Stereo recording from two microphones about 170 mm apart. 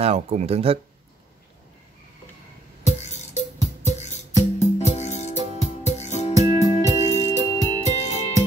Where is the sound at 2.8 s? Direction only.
40° left (ahead or behind).